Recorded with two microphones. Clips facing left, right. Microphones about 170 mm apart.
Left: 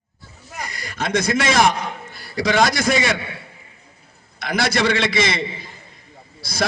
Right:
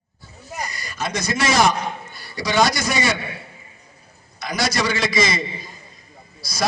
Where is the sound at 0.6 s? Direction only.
55° left (ahead or behind).